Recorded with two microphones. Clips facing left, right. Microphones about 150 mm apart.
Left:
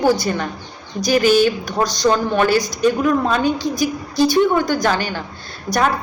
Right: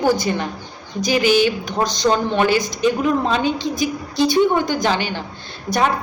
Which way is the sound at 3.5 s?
20° right (ahead or behind).